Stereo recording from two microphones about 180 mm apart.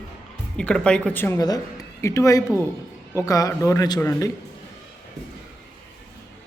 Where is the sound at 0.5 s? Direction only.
5° left (ahead or behind).